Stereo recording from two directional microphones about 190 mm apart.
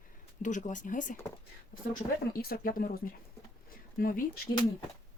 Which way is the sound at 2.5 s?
50° left (ahead or behind).